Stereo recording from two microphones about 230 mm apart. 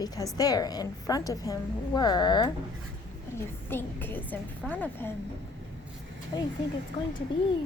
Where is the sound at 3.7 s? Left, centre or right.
Centre.